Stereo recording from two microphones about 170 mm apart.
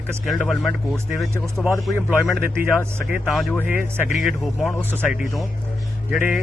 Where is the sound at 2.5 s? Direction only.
10° right (ahead or behind).